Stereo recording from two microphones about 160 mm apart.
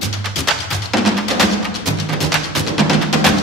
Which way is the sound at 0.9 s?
Centre (ahead or behind).